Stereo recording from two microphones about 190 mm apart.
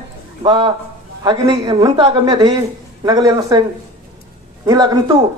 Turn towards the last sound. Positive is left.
turn(degrees=-20)  # may be behind; listen again after turning